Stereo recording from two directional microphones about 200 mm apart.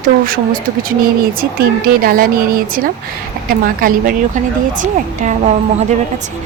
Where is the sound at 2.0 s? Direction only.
45° right (ahead or behind).